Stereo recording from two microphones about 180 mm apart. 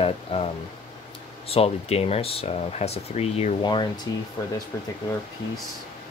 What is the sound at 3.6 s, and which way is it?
Speech, 25° left (ahead or behind).